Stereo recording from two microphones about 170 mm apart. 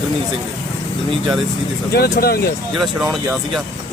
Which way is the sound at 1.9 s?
65° left (ahead or behind).